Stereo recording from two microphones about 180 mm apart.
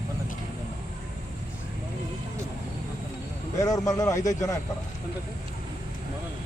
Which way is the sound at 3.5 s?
20° left (ahead or behind).